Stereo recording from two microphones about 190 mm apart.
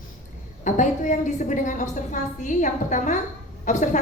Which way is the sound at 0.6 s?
40° left (ahead or behind).